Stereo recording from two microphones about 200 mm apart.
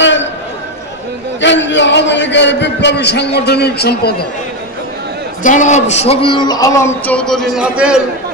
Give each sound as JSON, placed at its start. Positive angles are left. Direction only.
{"t": 1.4, "sound": "a man's voice", "side_deg": 65}
{"t": 5.4, "sound": "speech", "side_deg": 40}